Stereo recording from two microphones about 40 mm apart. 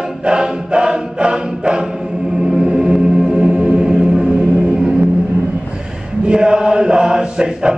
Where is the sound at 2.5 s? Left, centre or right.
Right.